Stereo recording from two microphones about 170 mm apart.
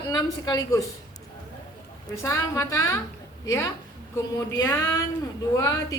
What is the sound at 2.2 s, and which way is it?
Speech, 20° left (ahead or behind).